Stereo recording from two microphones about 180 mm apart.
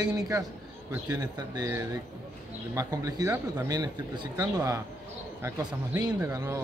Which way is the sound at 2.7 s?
20° right (ahead or behind).